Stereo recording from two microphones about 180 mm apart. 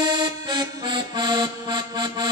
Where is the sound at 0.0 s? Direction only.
25° right (ahead or behind).